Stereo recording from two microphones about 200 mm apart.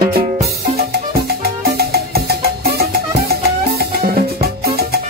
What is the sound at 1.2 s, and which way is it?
Music, 50° right (ahead or behind).